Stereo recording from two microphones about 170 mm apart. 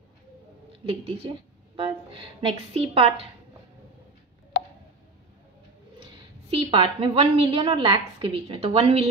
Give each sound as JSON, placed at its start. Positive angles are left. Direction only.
{"t": 0.8, "sound": "a woman's voice", "side_deg": -35}
{"t": 6.5, "sound": "a woman's voice", "side_deg": -35}